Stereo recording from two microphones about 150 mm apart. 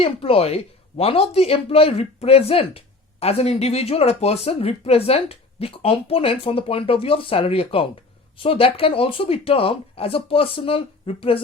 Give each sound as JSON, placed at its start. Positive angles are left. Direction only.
{"t": 0.0, "sound": "speech", "side_deg": 40}